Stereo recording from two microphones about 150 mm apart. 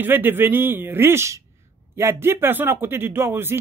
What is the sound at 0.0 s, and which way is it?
Speech, 15° right (ahead or behind).